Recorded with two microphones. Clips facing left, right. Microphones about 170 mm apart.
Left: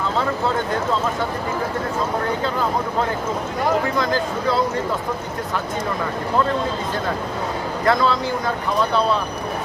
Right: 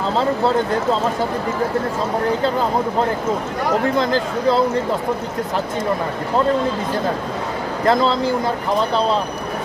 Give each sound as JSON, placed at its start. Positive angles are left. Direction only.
{"t": 3.9, "sound": "speech", "side_deg": -25}
{"t": 7.9, "sound": "speech", "side_deg": -25}